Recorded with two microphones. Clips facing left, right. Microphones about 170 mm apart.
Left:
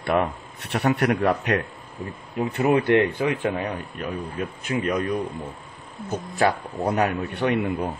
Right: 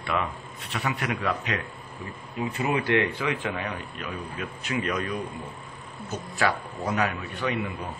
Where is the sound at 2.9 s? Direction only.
50° left (ahead or behind).